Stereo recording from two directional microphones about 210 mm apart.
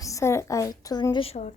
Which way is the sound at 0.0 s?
15° left (ahead or behind).